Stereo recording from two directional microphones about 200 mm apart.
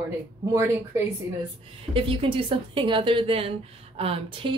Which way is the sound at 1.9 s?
25° right (ahead or behind).